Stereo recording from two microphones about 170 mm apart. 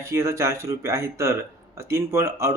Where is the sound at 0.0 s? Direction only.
15° right (ahead or behind).